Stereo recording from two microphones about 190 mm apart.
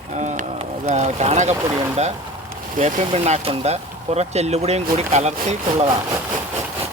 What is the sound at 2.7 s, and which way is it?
Speech, 35° right (ahead or behind).